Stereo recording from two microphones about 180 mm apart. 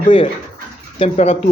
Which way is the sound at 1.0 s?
35° left (ahead or behind).